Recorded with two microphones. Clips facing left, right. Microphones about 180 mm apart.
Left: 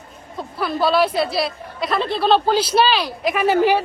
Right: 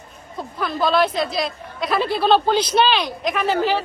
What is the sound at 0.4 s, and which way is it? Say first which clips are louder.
A woman's voice: left 2 dB; 5° left (ahead or behind).